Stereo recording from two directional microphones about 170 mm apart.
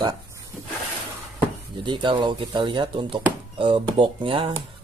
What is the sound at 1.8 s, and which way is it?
Speech, 25° right (ahead or behind).